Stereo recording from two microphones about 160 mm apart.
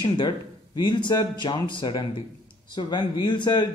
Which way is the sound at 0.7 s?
25° left (ahead or behind).